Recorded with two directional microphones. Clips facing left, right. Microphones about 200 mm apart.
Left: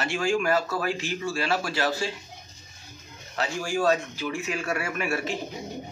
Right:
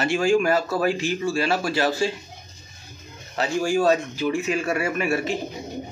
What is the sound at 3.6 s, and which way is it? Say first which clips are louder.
Speech: right 4 dB; 15° right (ahead or behind).